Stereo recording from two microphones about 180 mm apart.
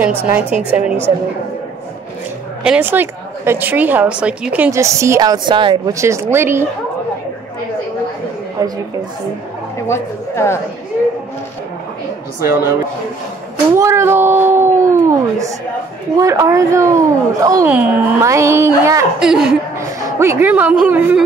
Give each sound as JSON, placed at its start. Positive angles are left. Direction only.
{"t": 0.0, "sound": "a woman's voice", "side_deg": -10}
{"t": 2.6, "sound": "a woman's voice", "side_deg": -10}
{"t": 5.9, "sound": "a woman's voice", "side_deg": -15}
{"t": 8.6, "sound": "a man's voice", "side_deg": -20}
{"t": 9.8, "sound": "speech", "side_deg": 15}
{"t": 13.7, "sound": "a woman's voice", "side_deg": -15}
{"t": 19.1, "sound": "a woman's voice", "side_deg": -5}
{"t": 20.0, "sound": "a woman's voice", "side_deg": -15}